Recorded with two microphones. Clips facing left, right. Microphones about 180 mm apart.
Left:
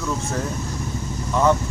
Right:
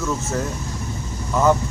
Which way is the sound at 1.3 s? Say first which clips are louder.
Right 1 dB; centre (ahead or behind).